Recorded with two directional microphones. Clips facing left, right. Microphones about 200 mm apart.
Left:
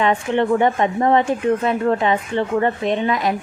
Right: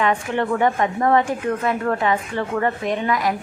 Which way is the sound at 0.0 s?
25° left (ahead or behind).